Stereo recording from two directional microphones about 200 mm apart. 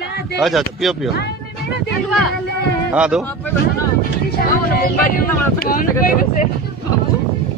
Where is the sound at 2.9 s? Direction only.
5° right (ahead or behind).